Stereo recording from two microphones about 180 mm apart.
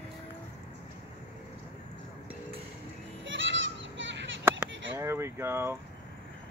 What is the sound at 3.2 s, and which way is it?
Children playing, 90° right.